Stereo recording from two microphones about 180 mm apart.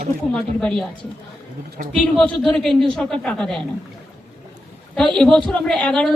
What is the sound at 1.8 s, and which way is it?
Speech, 45° right (ahead or behind).